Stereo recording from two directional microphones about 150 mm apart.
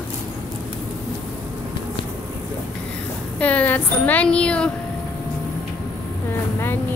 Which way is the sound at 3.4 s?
10° left (ahead or behind).